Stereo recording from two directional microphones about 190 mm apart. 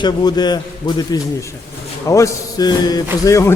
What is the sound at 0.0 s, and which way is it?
A man's voice, 20° left (ahead or behind).